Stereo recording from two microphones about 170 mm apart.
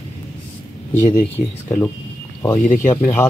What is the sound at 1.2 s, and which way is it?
Speech, 10° left (ahead or behind).